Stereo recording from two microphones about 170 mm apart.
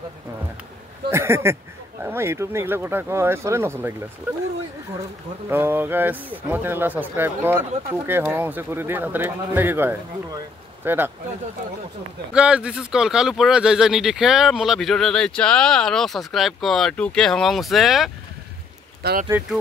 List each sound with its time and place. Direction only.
1.1 s speech: 15° right (ahead or behind)
5.5 s speech: 10° right (ahead or behind)
12.4 s speech: 5° right (ahead or behind)
19.0 s speech: 70° right (ahead or behind)